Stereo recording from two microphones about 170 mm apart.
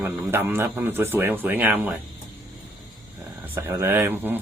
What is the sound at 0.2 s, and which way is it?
Speech, 10° right (ahead or behind).